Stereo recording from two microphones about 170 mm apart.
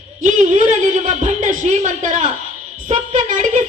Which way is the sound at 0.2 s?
45° right (ahead or behind).